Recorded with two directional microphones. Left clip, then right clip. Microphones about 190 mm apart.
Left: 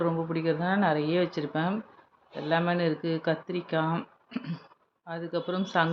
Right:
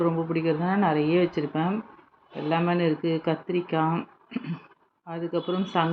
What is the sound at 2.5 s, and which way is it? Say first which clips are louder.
Speech: right 2 dB; centre (ahead or behind).